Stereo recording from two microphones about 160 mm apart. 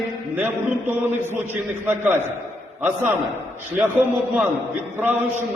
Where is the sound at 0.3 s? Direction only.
15° right (ahead or behind).